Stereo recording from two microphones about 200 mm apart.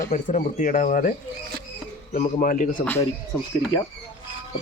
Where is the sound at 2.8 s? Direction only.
10° left (ahead or behind).